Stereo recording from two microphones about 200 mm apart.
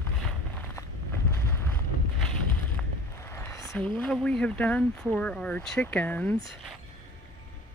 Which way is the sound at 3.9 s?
5° left (ahead or behind).